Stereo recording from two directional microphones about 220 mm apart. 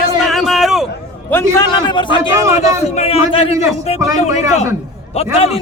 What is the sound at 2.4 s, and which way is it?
Speech, 15° right (ahead or behind).